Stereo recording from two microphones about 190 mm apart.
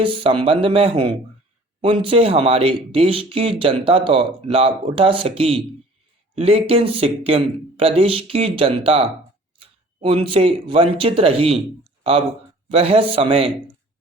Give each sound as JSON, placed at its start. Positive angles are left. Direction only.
{"t": 0.0, "sound": "a man's voice", "side_deg": -25}